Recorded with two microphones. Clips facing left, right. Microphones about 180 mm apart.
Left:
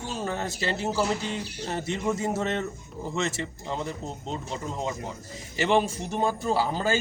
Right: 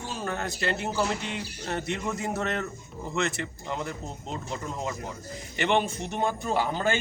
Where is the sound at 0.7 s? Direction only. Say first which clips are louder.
Left 2 dB; 30° left (ahead or behind).